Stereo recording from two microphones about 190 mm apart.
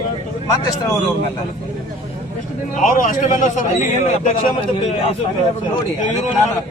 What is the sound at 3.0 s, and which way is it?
Speech, 40° left (ahead or behind).